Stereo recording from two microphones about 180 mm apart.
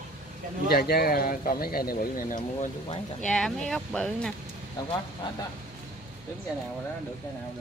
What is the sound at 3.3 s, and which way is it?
Speech, 5° left (ahead or behind).